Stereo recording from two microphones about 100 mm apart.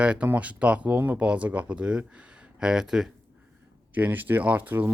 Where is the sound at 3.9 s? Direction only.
20° right (ahead or behind).